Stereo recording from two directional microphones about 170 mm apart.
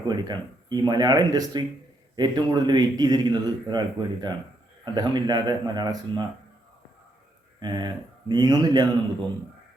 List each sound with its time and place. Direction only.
0.1 s a man's voice: 25° right (ahead or behind)
7.6 s a man's voice: 25° right (ahead or behind)